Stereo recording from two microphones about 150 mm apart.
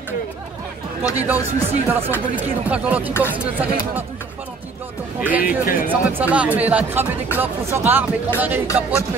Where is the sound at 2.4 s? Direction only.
10° right (ahead or behind).